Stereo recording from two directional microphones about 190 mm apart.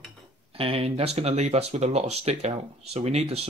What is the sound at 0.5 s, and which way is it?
Speech, 30° right (ahead or behind).